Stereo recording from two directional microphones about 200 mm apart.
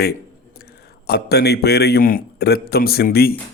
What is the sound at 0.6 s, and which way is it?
A man's voice, 50° left (ahead or behind).